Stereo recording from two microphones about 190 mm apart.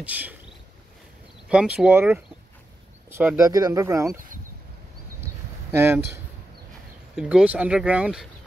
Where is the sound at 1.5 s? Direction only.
5° right (ahead or behind).